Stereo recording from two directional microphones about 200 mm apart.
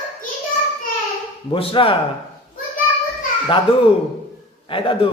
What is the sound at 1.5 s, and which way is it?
Speech, 25° left (ahead or behind).